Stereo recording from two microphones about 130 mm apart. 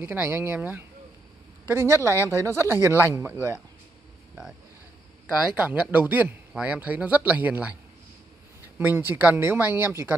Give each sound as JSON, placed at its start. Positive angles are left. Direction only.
{"t": 0.0, "sound": "speech", "side_deg": -15}
{"t": 5.5, "sound": "speech", "side_deg": -10}
{"t": 8.7, "sound": "speech", "side_deg": -15}